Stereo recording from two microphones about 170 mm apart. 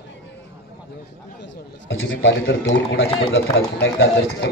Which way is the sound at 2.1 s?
90° left.